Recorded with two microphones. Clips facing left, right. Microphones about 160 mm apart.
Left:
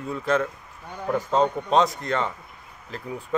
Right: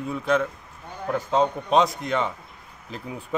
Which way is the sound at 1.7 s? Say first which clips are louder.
Even; 10° right (ahead or behind).